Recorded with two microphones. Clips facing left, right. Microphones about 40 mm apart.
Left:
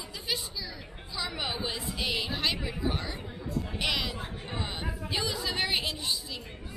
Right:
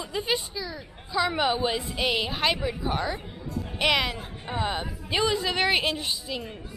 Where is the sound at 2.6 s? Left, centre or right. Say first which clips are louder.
Right 5 dB; centre.